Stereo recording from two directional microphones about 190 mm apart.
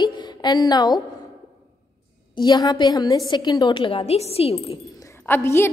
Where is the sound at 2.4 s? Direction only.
20° left (ahead or behind).